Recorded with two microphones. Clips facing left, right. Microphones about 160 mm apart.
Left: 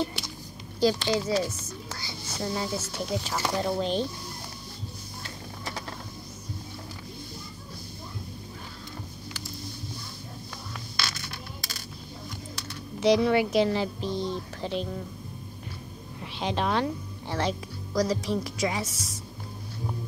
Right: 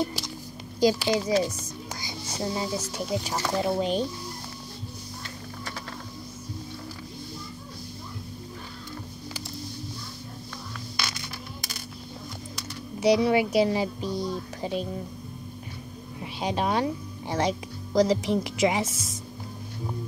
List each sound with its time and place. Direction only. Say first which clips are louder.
0.7 s speech: right 2 dB; 15° right (ahead or behind)
13.0 s speech: right 1 dB; 10° right (ahead or behind)
16.2 s a woman's voice: right 1 dB; 10° right (ahead or behind)